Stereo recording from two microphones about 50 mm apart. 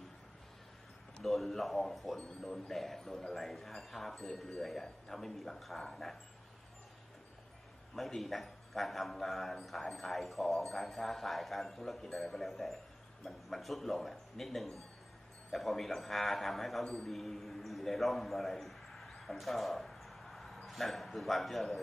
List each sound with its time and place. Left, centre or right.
1.2 s a man's voice: centre
2.1 s a man's voice: centre
7.9 s a man's voice: centre